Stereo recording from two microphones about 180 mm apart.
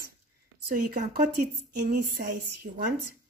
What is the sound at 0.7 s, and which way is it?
Speech, 55° right (ahead or behind).